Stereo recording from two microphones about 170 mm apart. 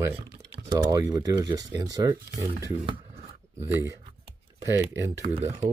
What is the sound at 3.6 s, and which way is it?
Speech, 15° right (ahead or behind).